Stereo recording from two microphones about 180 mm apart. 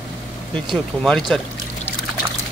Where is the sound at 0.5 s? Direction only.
Centre (ahead or behind).